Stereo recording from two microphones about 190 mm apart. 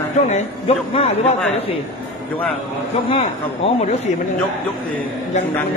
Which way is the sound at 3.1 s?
30° left (ahead or behind).